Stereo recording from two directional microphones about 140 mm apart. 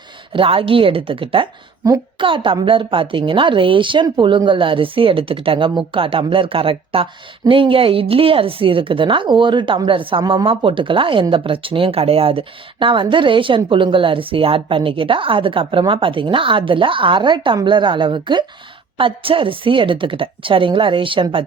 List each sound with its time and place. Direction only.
0.3 s a woman's voice: 40° right (ahead or behind)